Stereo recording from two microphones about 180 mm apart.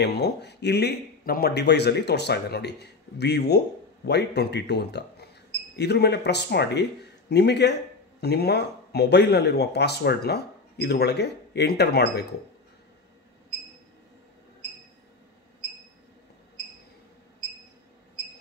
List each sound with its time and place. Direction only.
0.0 s speech: 65° left (ahead or behind)